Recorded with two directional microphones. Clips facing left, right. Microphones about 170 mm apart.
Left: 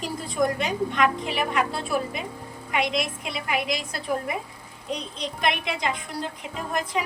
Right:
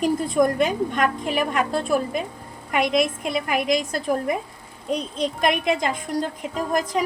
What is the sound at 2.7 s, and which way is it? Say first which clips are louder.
A woman's voice: right 5 dB; 50° right (ahead or behind).